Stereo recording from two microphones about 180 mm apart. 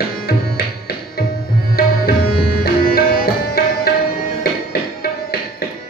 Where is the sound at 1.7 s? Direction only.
60° left (ahead or behind).